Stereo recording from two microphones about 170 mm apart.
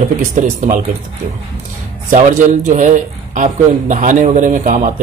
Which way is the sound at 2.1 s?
50° right (ahead or behind).